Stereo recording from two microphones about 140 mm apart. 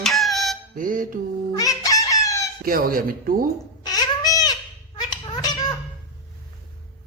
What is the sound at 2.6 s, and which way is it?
Speech, 90° right.